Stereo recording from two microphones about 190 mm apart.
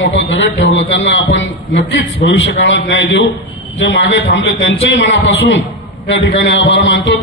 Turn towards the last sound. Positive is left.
turn(degrees=75)  # may be behind; listen again after turning